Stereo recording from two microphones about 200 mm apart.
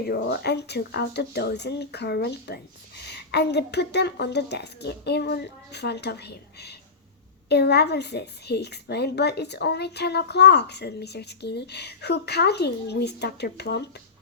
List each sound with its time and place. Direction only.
0.1 s speech: 55° left (ahead or behind)